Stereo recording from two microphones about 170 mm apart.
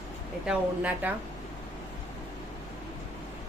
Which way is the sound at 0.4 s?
10° right (ahead or behind).